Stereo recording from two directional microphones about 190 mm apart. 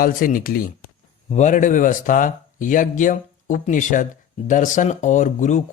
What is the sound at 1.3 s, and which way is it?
Speech, 40° left (ahead or behind).